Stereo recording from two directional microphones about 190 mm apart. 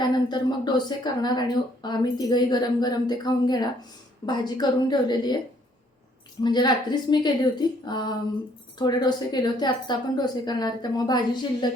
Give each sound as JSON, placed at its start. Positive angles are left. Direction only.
{"t": 0.0, "sound": "speech", "side_deg": 20}
{"t": 6.4, "sound": "speech", "side_deg": 20}